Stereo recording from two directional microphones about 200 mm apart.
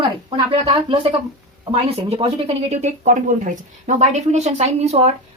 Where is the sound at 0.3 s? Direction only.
30° right (ahead or behind).